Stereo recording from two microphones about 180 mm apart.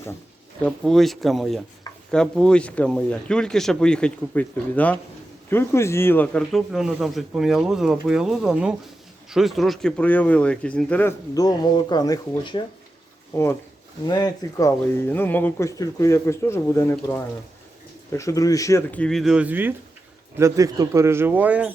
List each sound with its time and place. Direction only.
0.6 s speech: centre (ahead or behind)
11.3 s speech: 20° left (ahead or behind)
13.3 s speech: 15° left (ahead or behind); by 21.7 s 10° right (ahead or behind)